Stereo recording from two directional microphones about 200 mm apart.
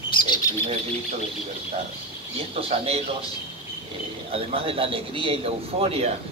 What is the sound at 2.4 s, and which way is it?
Speech, 30° right (ahead or behind).